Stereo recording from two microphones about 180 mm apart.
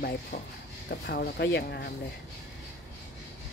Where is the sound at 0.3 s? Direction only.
60° left (ahead or behind).